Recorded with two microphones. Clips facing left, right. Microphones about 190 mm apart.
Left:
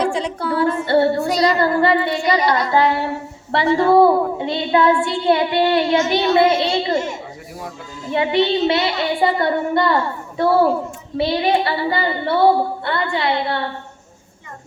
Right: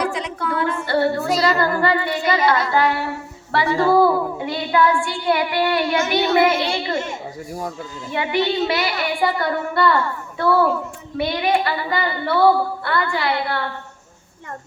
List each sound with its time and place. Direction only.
0.0 s a woman's voice: 30° left (ahead or behind)
8.1 s speech: 25° left (ahead or behind)